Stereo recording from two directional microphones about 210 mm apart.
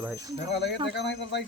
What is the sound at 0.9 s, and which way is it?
Speech, 55° left (ahead or behind).